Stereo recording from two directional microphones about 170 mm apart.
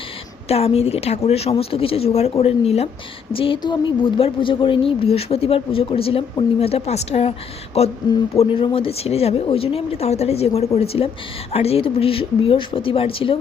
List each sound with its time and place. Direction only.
0.4 s a woman's voice: 35° left (ahead or behind)